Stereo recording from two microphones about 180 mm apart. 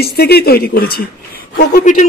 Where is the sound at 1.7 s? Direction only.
45° left (ahead or behind).